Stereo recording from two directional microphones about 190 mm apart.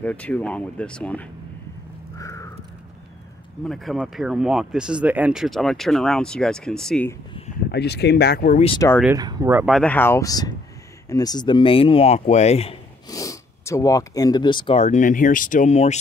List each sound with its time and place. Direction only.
0.0 s speech: 5° left (ahead or behind)
2.1 s a sound: 15° left (ahead or behind)
3.6 s speech: centre (ahead or behind)
7.7 s speech: 60° left (ahead or behind)
9.1 s speech: 20° right (ahead or behind)
9.7 s a man's voice: 5° left (ahead or behind); by 12.7 s 35° left (ahead or behind)
13.1 s speech: 15° left (ahead or behind)
14.8 s speech: 40° left (ahead or behind)